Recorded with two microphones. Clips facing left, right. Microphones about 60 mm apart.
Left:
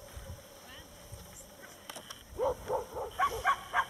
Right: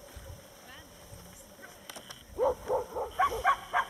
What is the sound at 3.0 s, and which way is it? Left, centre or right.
Bow-wow, centre.